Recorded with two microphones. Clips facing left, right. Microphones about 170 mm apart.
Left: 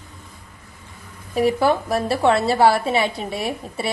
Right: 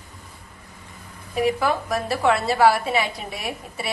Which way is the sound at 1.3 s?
35° left (ahead or behind).